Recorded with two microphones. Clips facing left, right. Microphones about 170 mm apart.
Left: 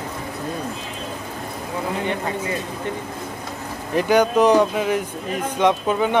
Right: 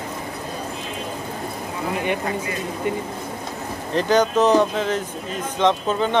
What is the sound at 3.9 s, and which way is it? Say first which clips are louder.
Speech: left 1 dB; 10° left (ahead or behind).